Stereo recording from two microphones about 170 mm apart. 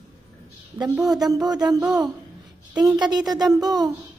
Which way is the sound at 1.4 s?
25° right (ahead or behind).